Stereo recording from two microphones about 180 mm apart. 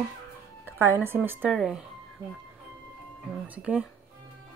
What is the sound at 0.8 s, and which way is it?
Speech, 15° right (ahead or behind).